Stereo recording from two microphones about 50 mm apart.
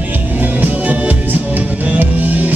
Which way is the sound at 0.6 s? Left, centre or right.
Right.